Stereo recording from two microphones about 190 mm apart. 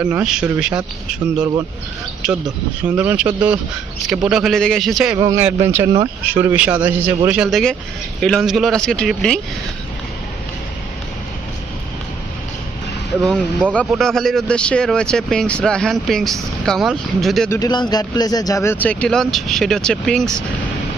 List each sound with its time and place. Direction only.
0.0 s speech: 5° right (ahead or behind)
2.2 s a man's voice: 5° right (ahead or behind)
5.1 s a man's voice: 15° right (ahead or behind)
5.9 s speech: 25° right (ahead or behind)
6.4 s a man's voice: 10° right (ahead or behind)
13.2 s speech: 5° right (ahead or behind)
17.5 s speech: 20° left (ahead or behind); by 20.3 s centre (ahead or behind)